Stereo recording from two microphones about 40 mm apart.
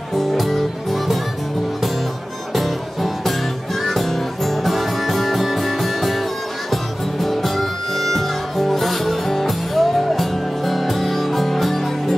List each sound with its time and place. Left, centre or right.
0.1 s music: centre
2.5 s music: centre